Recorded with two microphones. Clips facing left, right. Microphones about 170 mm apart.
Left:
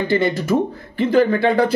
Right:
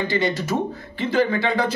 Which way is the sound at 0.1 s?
50° left (ahead or behind).